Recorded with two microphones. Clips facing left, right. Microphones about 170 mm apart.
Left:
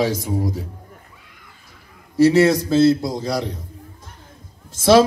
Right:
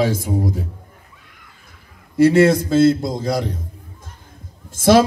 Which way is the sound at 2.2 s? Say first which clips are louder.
Right 1 dB; 55° right (ahead or behind).